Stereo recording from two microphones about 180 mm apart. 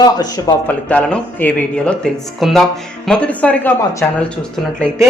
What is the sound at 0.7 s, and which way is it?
Speech, 10° left (ahead or behind).